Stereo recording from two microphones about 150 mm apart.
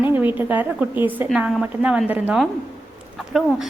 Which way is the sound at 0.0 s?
15° right (ahead or behind).